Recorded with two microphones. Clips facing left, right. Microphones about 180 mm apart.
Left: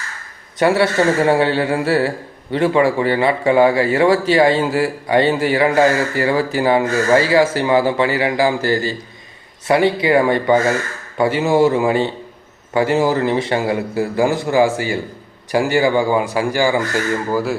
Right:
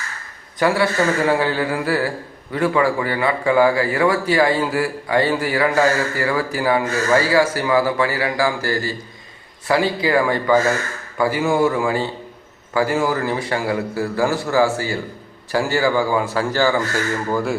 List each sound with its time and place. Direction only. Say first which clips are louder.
0.6 s a man's voice: left 3 dB; 25° left (ahead or behind); by 17.6 s 5° left (ahead or behind)